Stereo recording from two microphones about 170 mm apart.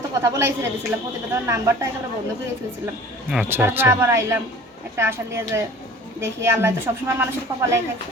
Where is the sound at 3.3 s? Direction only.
10° right (ahead or behind).